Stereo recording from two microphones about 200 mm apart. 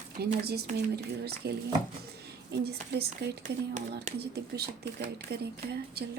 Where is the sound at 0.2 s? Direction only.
55° right (ahead or behind).